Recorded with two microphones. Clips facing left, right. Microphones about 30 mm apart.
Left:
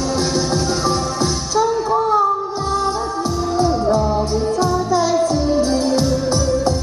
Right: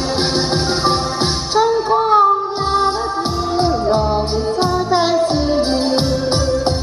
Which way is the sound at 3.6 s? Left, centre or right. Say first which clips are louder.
Right 1 dB; right.